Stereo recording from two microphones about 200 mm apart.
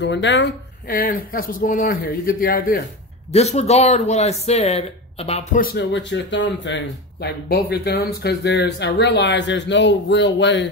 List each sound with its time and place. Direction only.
0.0 s speech: 60° left (ahead or behind); by 2.8 s 45° left (ahead or behind)
3.3 s speech: 35° left (ahead or behind)
5.6 s speech: 50° left (ahead or behind)
5.9 s speech: 65° left (ahead or behind)